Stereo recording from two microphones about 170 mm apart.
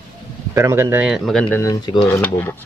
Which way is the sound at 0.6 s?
15° right (ahead or behind).